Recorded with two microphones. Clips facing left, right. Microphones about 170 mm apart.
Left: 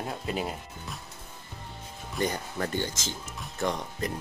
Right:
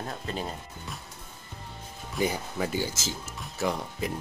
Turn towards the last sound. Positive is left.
turn(degrees=-5)  # may be behind; listen again after turning